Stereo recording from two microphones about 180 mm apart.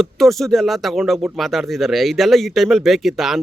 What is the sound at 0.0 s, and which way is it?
Speech, centre (ahead or behind).